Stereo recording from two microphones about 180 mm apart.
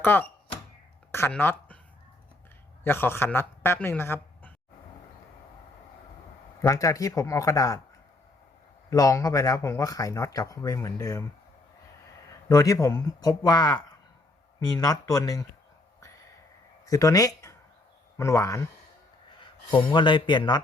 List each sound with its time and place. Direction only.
0.0 s a sound: 10° left (ahead or behind)
2.8 s a man's voice: 10° left (ahead or behind)
6.6 s speech: 15° left (ahead or behind)
8.9 s speech: 20° left (ahead or behind)
12.5 s speech: 20° left (ahead or behind)
16.8 s speech: 20° left (ahead or behind)
19.4 s a man's voice: 25° left (ahead or behind)